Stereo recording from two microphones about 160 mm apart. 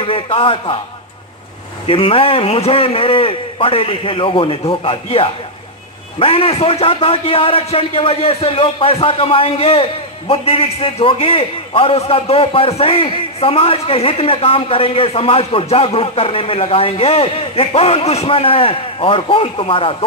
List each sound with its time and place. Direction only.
0.0 s a man's voice: 35° left (ahead or behind)
1.9 s a man's voice: 35° left (ahead or behind)